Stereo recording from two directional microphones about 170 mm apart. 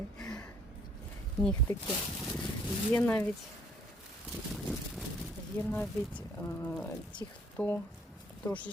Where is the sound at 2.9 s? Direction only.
10° left (ahead or behind).